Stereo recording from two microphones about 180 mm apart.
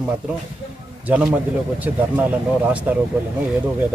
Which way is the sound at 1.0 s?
10° right (ahead or behind).